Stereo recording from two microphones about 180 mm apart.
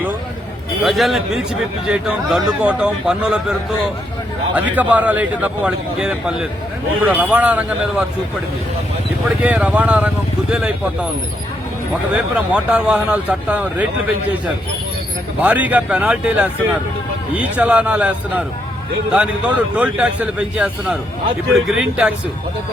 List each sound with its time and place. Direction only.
0.9 s a man's voice: centre (ahead or behind)
4.5 s a man's voice: 10° right (ahead or behind)
9.4 s a man's voice: 5° right (ahead or behind)
12.1 s a man's voice: 5° right (ahead or behind)
15.4 s a man's voice: 10° right (ahead or behind)